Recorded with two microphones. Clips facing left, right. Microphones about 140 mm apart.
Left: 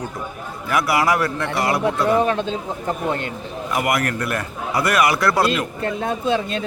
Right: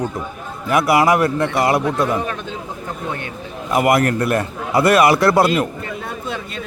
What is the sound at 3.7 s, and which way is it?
A man's voice, 25° right (ahead or behind).